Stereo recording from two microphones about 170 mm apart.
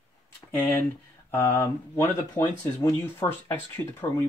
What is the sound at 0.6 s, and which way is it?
Speech, 10° left (ahead or behind).